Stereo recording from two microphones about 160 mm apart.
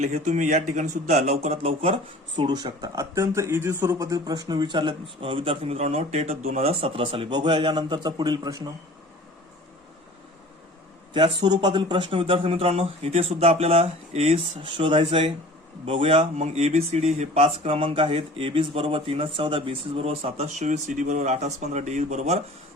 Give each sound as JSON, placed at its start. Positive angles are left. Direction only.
{"t": 0.0, "sound": "a man's voice", "side_deg": -45}
{"t": 11.1, "sound": "speech", "side_deg": -35}